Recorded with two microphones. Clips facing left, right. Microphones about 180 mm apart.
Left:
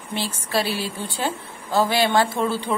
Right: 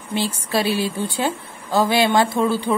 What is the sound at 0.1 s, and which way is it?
A woman's voice, 15° right (ahead or behind).